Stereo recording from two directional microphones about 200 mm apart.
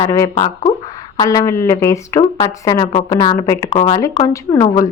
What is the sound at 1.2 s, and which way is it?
A woman's voice, 20° left (ahead or behind).